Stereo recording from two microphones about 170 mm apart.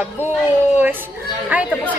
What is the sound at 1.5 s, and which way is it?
Speech, 10° right (ahead or behind).